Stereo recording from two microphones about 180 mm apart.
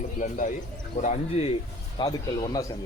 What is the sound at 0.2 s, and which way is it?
Speech, 45° left (ahead or behind).